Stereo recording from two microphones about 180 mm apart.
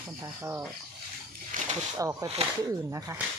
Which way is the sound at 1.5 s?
50° right (ahead or behind).